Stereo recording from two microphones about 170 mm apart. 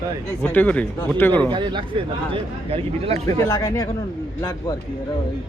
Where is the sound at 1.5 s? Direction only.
25° right (ahead or behind).